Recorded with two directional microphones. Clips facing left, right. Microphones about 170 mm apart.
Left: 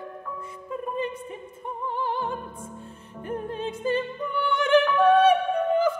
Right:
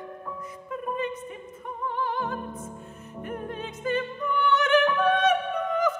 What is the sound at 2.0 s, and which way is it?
Music, 30° left (ahead or behind).